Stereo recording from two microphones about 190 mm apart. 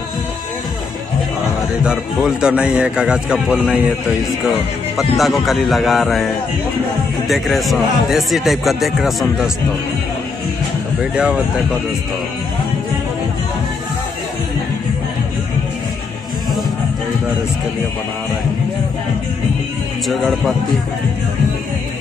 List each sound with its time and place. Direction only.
1.9 s speech: 5° right (ahead or behind)
4.9 s speech: centre (ahead or behind)
11.0 s speech: 5° right (ahead or behind)
20.1 s speech: centre (ahead or behind)